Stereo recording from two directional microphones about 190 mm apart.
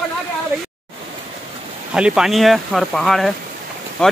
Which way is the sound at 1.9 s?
5° right (ahead or behind).